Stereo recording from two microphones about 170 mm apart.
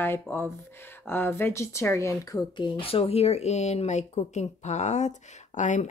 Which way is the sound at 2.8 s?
35° left (ahead or behind).